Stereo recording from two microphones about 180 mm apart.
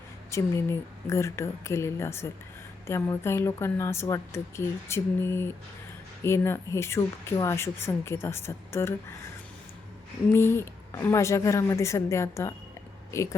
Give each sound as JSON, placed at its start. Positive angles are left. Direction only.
{"t": 0.3, "sound": "a woman's voice", "side_deg": 15}
{"t": 10.9, "sound": "a woman's voice", "side_deg": 15}